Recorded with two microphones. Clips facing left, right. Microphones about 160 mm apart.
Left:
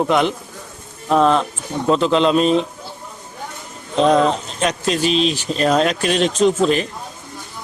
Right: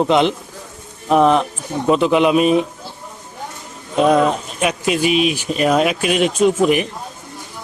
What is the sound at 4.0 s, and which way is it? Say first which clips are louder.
Speech: even; 10° right (ahead or behind).